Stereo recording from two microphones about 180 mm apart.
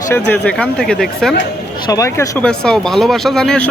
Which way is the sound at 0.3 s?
5° left (ahead or behind).